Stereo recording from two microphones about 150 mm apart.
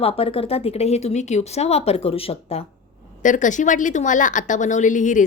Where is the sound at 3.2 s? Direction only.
55° left (ahead or behind).